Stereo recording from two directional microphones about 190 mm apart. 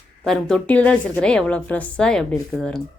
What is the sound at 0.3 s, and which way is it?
A woman's voice, 5° left (ahead or behind).